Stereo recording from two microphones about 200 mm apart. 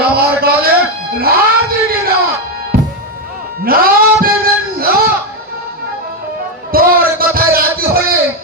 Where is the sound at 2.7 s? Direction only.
50° right (ahead or behind).